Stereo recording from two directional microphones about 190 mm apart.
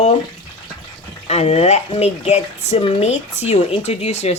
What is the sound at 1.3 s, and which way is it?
Speech, 35° left (ahead or behind).